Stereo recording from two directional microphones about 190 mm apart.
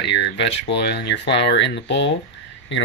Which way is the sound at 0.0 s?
65° left (ahead or behind).